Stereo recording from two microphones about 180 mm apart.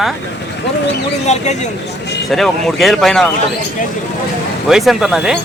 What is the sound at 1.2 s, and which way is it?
Speech, 40° left (ahead or behind).